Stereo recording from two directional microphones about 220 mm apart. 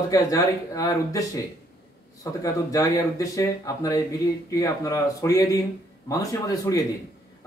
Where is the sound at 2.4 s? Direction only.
15° left (ahead or behind).